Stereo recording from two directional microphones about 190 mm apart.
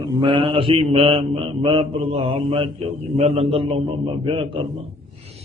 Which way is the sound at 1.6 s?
30° right (ahead or behind).